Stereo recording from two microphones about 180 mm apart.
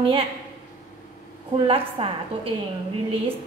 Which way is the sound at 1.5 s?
30° right (ahead or behind).